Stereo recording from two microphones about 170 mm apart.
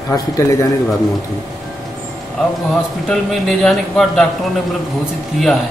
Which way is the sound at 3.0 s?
5° left (ahead or behind).